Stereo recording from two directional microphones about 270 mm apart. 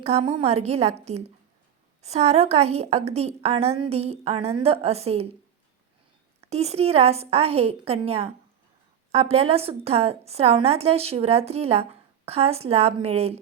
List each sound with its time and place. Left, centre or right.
0.0 s a woman's voice: right
6.4 s a woman's voice: right